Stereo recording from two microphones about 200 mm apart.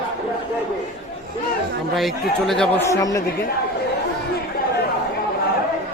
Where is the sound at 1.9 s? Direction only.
Centre (ahead or behind).